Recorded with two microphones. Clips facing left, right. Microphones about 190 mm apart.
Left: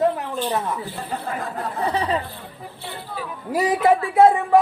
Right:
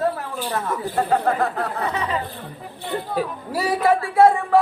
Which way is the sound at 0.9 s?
65° right (ahead or behind).